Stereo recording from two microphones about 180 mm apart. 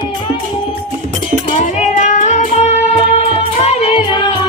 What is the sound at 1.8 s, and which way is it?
Music, 45° left (ahead or behind).